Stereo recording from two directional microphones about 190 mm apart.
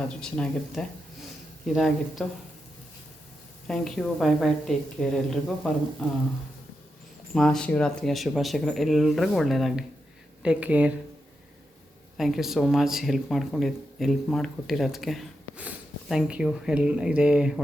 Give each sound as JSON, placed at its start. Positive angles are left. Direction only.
{"t": 0.2, "sound": "speech", "side_deg": 5}
{"t": 3.7, "sound": "speech", "side_deg": 0}
{"t": 7.3, "sound": "speech", "side_deg": 5}
{"t": 12.1, "sound": "speech", "side_deg": 0}